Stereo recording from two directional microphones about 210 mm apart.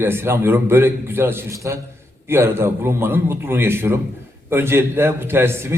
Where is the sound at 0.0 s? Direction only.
10° right (ahead or behind).